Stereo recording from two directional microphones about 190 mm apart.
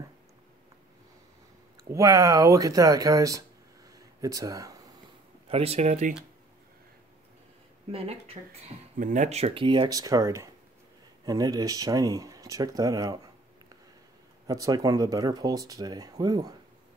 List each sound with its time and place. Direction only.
1.9 s speech: 15° right (ahead or behind)
3.9 s a sound: 20° right (ahead or behind)
5.5 s speech: 30° right (ahead or behind)
7.9 s speech: 30° right (ahead or behind)
14.5 s speech: 20° right (ahead or behind)